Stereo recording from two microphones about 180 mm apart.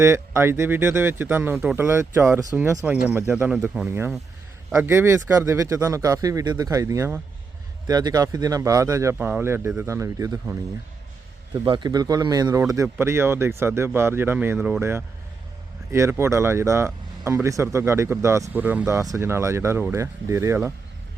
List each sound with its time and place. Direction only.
0.0 s speech: 15° right (ahead or behind)
11.6 s speech: 25° right (ahead or behind)